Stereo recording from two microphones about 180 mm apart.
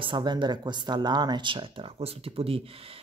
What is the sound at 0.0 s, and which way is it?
Speech, 25° right (ahead or behind).